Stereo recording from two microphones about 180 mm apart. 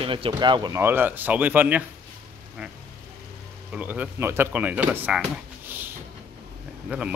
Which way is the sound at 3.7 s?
10° right (ahead or behind).